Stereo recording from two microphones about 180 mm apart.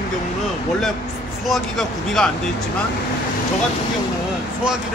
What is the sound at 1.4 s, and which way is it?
Speech, centre (ahead or behind).